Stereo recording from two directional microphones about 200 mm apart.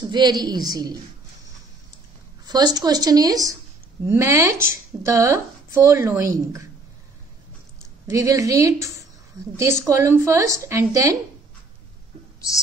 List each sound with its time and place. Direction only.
0.0 s a woman's voice: 20° right (ahead or behind)
2.4 s a woman's voice: 20° right (ahead or behind)
8.1 s a woman's voice: 15° right (ahead or behind)